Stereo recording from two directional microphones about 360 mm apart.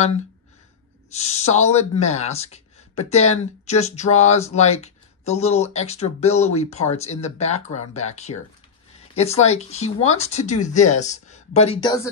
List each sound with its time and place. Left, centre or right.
1.1 s speech: centre
9.1 s speech: centre